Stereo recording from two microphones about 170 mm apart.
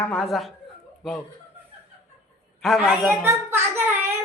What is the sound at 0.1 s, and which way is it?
Speech, centre (ahead or behind).